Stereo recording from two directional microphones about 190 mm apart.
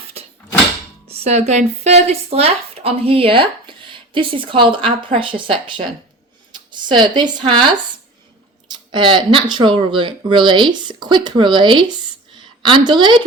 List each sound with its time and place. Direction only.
1.0 s speech: 35° right (ahead or behind)
6.5 s a sound: 25° right (ahead or behind)
7.0 s speech: 25° right (ahead or behind)